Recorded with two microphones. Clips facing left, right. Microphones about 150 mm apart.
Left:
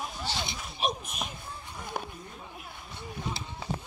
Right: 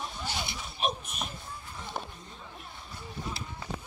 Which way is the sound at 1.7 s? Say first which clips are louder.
Left 2 dB; 10° left (ahead or behind).